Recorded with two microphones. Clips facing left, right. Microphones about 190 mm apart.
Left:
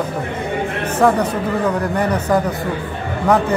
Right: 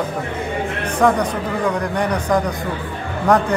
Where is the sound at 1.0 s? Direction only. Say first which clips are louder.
Left 1 dB; 5° left (ahead or behind).